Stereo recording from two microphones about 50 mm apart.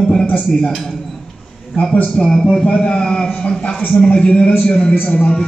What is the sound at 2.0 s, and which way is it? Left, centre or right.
Speech, left.